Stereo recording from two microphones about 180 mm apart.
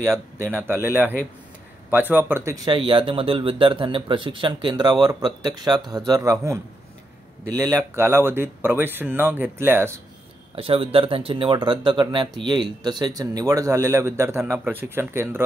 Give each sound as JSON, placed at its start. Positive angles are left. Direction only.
{"t": 0.0, "sound": "speech", "side_deg": -15}
{"t": 10.5, "sound": "speech", "side_deg": -30}